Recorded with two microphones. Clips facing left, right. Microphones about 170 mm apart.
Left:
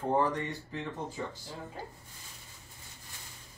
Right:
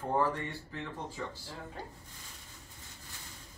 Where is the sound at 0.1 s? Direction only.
20° left (ahead or behind).